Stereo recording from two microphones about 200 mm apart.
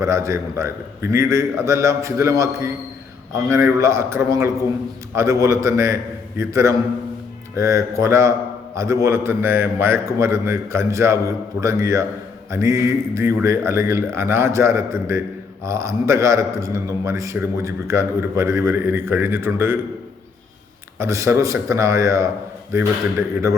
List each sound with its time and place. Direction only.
0.0 s a man's voice: 15° right (ahead or behind)
21.0 s a man's voice: 15° right (ahead or behind)